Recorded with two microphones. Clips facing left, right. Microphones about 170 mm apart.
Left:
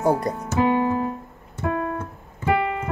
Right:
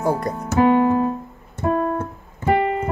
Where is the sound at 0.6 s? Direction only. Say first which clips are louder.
Right 5 dB; 35° right (ahead or behind).